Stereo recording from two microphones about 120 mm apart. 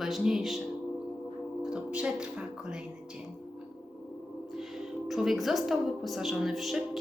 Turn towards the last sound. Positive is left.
turn(degrees=0)  # may be behind; listen again after turning